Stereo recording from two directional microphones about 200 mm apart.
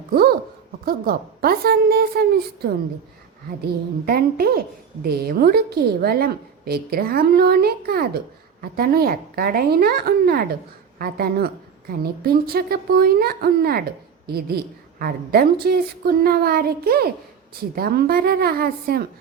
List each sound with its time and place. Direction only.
0.1 s a sound: 50° right (ahead or behind)
0.9 s a woman's voice: 50° right (ahead or behind)
4.0 s a woman's voice: 50° right (ahead or behind)